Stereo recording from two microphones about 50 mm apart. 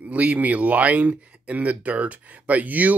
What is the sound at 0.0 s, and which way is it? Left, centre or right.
Speech, right.